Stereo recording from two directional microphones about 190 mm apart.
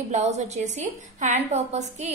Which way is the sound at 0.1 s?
40° right (ahead or behind).